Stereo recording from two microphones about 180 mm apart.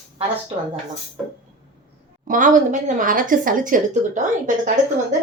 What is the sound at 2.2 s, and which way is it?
A woman's voice, 50° right (ahead or behind).